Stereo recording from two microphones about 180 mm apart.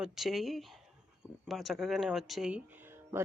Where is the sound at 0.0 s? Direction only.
Centre (ahead or behind).